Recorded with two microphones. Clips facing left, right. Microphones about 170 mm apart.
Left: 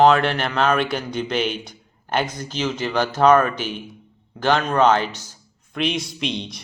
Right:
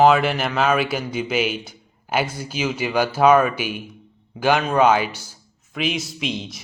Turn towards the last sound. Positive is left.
turn(degrees=0)  # may be behind; listen again after turning